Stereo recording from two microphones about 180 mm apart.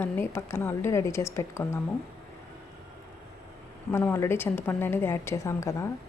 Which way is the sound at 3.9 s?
15° left (ahead or behind).